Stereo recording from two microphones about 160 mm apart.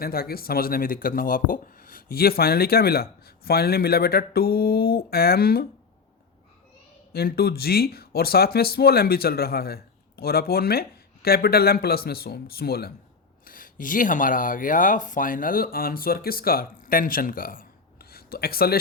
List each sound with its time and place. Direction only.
0.0 s speech: 70° left (ahead or behind)
7.1 s speech: 75° left (ahead or behind)
13.4 s speech: 60° left (ahead or behind)
18.1 s speech: 75° left (ahead or behind)